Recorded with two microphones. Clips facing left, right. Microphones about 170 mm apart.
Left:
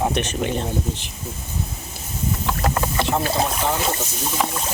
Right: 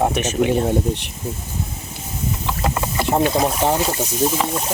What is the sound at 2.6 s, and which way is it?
Vehicle, 5° right (ahead or behind).